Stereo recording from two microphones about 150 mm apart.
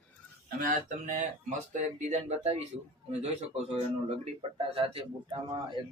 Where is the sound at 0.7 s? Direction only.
55° right (ahead or behind).